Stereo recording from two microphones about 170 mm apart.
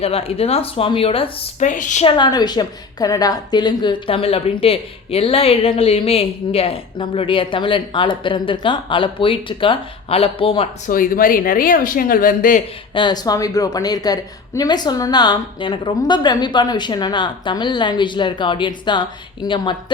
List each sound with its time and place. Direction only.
0.0 s a woman's voice: 35° left (ahead or behind)
1.6 s a woman's voice: 45° left (ahead or behind)
2.0 s a woman's voice: 25° left (ahead or behind)
10.8 s speech: 55° left (ahead or behind)
12.9 s a woman's voice: 25° left (ahead or behind)